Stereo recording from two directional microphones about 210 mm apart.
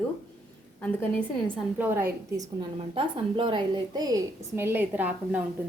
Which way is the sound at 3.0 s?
25° right (ahead or behind).